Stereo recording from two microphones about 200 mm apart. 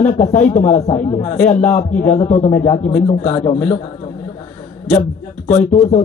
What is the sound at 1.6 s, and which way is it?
Speech, 5° left (ahead or behind).